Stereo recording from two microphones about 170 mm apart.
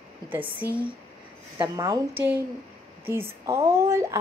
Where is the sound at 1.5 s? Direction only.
20° right (ahead or behind).